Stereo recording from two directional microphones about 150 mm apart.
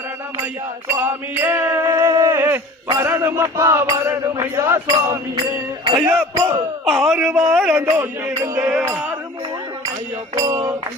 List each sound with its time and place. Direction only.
0.4 s music: 15° right (ahead or behind)
6.8 s speech: centre (ahead or behind)
7.7 s speech: 15° right (ahead or behind)
8.5 s music: 10° right (ahead or behind)
10.3 s speech: 25° right (ahead or behind)